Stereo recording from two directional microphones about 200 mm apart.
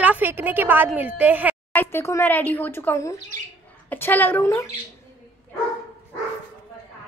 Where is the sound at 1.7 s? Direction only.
15° left (ahead or behind).